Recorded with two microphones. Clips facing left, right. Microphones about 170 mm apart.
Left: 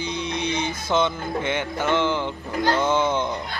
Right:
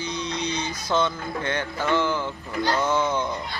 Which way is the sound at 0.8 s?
25° left (ahead or behind).